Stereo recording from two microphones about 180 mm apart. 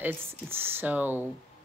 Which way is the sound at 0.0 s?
10° right (ahead or behind).